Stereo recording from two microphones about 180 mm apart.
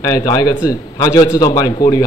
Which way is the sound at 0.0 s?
20° left (ahead or behind).